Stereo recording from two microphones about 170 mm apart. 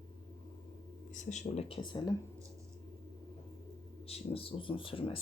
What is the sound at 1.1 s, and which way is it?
Speech, 45° left (ahead or behind).